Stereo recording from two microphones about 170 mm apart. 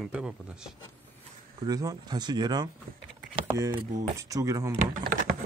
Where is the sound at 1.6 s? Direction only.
20° right (ahead or behind).